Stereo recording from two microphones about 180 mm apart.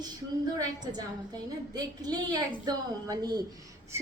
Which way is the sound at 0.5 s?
20° right (ahead or behind).